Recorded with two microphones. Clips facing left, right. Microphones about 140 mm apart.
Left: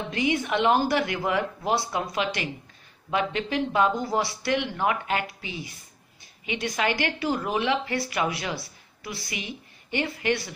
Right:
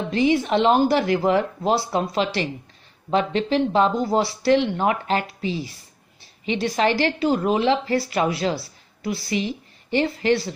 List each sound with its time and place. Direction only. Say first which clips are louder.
0.1 s a woman's voice: right 7 dB; 30° right (ahead or behind)